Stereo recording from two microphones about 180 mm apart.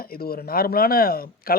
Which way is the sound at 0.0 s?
55° left (ahead or behind).